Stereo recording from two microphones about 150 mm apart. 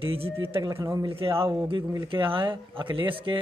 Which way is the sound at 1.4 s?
35° right (ahead or behind).